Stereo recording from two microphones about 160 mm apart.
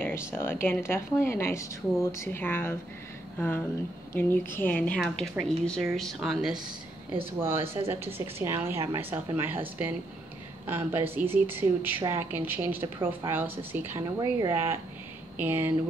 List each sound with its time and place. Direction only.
0.0 s speech: 15° left (ahead or behind); by 6.6 s 5° right (ahead or behind)
7.3 s a woman's voice: 15° right (ahead or behind)
7.6 s speech: 35° right (ahead or behind)
7.9 s a woman's voice: 15° right (ahead or behind)